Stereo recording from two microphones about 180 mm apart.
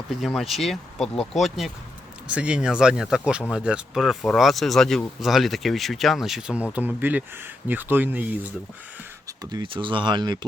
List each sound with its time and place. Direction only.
0.1 s speech: centre (ahead or behind)
9.4 s speech: 20° right (ahead or behind)